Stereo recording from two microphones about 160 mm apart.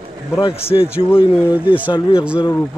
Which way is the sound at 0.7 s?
30° left (ahead or behind).